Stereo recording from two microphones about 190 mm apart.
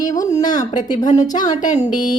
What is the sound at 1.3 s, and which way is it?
Speech, 40° left (ahead or behind).